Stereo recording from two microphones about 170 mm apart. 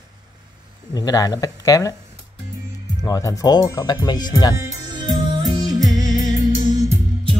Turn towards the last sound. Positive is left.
turn(degrees=-25)  # may be behind; listen again after turning